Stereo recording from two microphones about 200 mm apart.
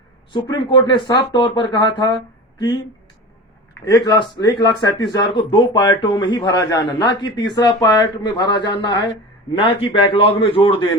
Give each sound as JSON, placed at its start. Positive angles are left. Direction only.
{"t": 0.3, "sound": "speech", "side_deg": 20}
{"t": 3.8, "sound": "speech", "side_deg": 15}